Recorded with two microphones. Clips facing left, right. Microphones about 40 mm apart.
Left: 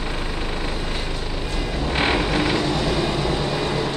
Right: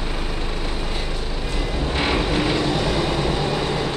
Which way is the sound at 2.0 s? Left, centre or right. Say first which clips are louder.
Left 1 dB; left.